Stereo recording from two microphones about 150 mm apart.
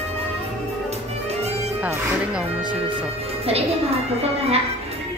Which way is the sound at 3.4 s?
45° right (ahead or behind).